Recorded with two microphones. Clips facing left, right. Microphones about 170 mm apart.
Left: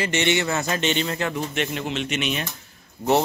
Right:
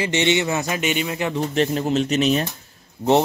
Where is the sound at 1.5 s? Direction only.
35° right (ahead or behind).